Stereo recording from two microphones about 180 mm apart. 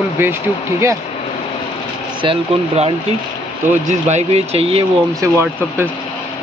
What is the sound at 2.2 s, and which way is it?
Speech, 30° right (ahead or behind).